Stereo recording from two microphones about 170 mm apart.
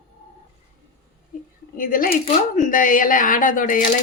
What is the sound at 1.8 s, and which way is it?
A woman's voice, 55° left (ahead or behind).